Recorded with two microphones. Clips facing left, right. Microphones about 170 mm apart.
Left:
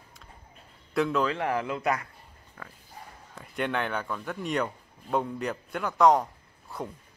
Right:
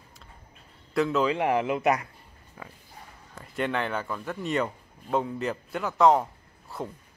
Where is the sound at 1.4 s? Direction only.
20° right (ahead or behind).